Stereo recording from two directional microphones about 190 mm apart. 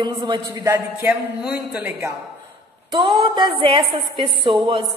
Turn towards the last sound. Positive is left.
turn(degrees=-25)  # may be behind; listen again after turning